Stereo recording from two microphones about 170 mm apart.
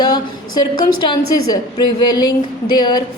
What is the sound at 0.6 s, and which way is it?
A woman's voice, 25° left (ahead or behind).